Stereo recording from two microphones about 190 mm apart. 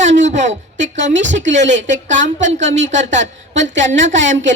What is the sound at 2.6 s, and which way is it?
Speech, 75° right (ahead or behind).